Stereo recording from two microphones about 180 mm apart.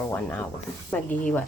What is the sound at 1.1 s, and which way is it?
Speech, 45° left (ahead or behind).